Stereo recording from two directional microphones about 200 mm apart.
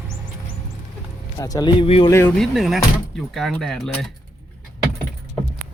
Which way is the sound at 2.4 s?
Centre (ahead or behind).